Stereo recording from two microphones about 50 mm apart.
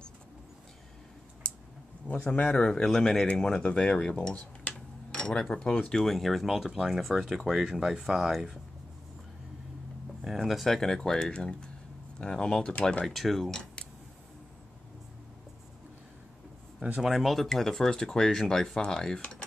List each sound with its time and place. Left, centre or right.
1.4 s a sound: left
2.2 s speech: left
2.5 s speech: centre
2.8 s speech: centre
4.1 s dishes: left
5.5 s speech: centre
6.0 s speech: centre
10.2 s speech: centre
13.5 s speech: centre
17.0 s speech: centre